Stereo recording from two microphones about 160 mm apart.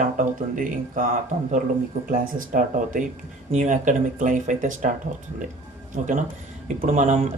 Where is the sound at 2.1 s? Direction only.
60° right (ahead or behind).